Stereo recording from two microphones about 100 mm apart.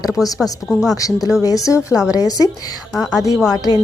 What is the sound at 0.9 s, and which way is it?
A woman's voice, 35° left (ahead or behind).